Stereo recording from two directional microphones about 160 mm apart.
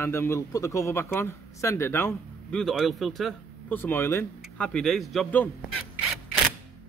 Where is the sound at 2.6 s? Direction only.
Centre (ahead or behind).